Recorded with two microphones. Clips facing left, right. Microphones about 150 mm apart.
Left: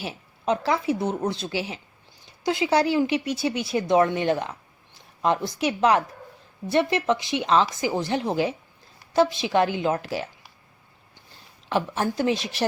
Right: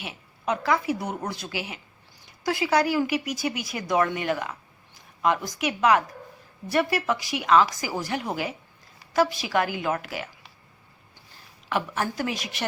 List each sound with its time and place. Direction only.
0.0 s speech: 30° left (ahead or behind)
11.7 s speech: 30° left (ahead or behind)